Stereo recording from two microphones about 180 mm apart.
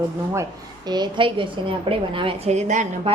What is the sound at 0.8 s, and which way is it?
A woman's voice, 25° right (ahead or behind).